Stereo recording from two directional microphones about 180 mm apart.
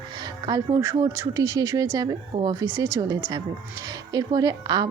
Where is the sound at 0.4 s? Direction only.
20° right (ahead or behind).